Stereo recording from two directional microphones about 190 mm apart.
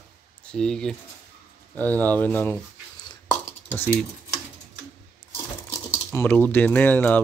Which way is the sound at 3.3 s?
10° left (ahead or behind).